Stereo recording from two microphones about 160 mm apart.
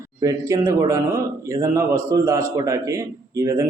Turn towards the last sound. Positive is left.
turn(degrees=-20)  # may be behind; listen again after turning